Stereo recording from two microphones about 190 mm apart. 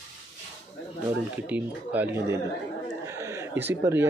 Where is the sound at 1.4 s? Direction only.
10° right (ahead or behind).